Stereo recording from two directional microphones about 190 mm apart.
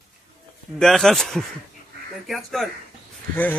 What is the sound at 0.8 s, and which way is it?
Speech, centre (ahead or behind).